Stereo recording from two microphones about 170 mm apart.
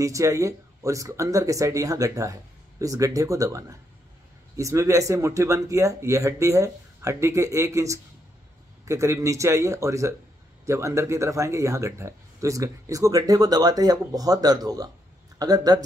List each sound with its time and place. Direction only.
0.0 s speech: 20° right (ahead or behind)